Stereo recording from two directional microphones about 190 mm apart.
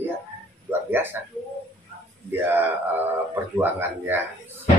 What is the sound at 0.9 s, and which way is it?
Speech, 10° right (ahead or behind).